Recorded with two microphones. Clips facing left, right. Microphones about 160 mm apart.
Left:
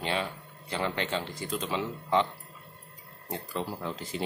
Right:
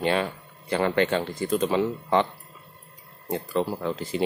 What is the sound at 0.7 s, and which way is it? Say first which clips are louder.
Speech: right 8 dB; 60° right (ahead or behind).